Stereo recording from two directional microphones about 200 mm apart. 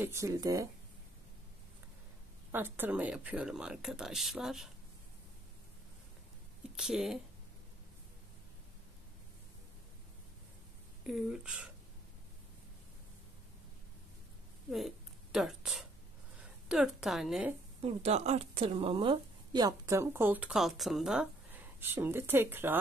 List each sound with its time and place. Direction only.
0.0 s speech: 15° right (ahead or behind)
2.5 s speech: 10° right (ahead or behind)
6.7 s speech: centre (ahead or behind)
11.1 s speech: centre (ahead or behind)
14.7 s a sound: centre (ahead or behind)
16.6 s speech: 5° right (ahead or behind)
17.8 s speech: 30° right (ahead or behind); by 22.8 s 10° right (ahead or behind)